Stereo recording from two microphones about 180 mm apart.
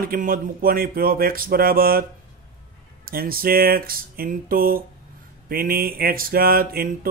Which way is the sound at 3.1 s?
55° right (ahead or behind).